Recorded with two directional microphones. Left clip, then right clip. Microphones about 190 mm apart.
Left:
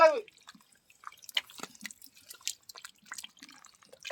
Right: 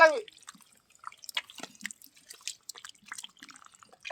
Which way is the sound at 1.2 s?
25° left (ahead or behind).